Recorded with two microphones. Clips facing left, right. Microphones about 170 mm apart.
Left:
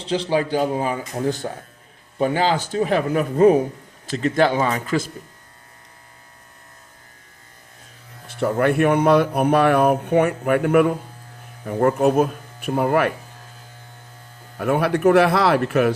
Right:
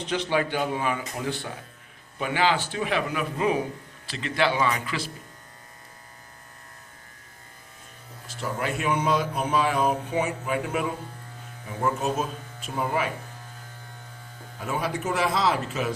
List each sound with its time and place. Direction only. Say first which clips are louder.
0.0 s speech: left 5 dB; 30° left (ahead or behind)
8.3 s speech: left 11 dB; 60° left (ahead or behind)
14.6 s speech: left 11 dB; 65° left (ahead or behind)